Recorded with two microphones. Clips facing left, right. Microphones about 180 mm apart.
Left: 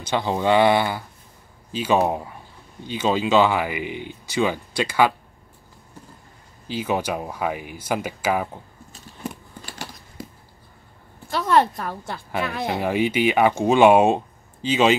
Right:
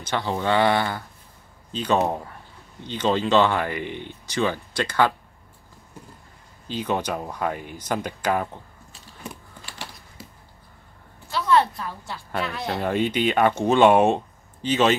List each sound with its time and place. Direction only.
0.0 s speech: 15° left (ahead or behind)
6.7 s speech: 5° left (ahead or behind)
11.2 s a woman's voice: 50° left (ahead or behind)
12.6 s speech: 10° left (ahead or behind)